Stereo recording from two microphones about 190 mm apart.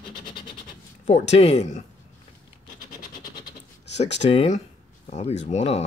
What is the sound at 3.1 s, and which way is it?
Vehicle, 20° left (ahead or behind).